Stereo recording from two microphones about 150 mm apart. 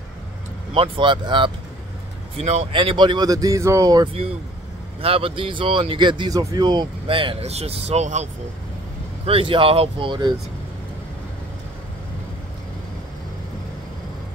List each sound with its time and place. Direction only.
0.7 s speech: 35° right (ahead or behind)
2.3 s speech: 45° right (ahead or behind); by 4.1 s 25° right (ahead or behind)
5.0 s speech: 40° right (ahead or behind)
9.2 s speech: 40° right (ahead or behind)